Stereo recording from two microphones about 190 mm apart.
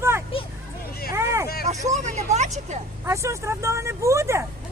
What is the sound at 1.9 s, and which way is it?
Speech, 40° right (ahead or behind).